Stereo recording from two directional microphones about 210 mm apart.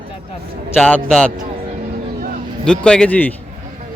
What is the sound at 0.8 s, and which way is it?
Speech, 5° left (ahead or behind).